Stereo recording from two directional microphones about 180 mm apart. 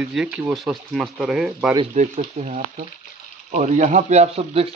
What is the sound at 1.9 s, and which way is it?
Speech, 40° right (ahead or behind).